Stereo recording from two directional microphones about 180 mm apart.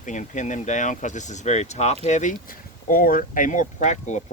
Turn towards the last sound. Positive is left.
turn(degrees=40)  # may be behind; listen again after turning